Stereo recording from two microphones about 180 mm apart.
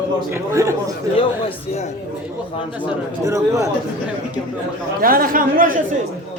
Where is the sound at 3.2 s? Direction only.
15° right (ahead or behind).